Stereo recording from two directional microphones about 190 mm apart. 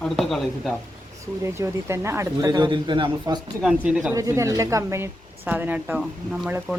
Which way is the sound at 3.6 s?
5° right (ahead or behind).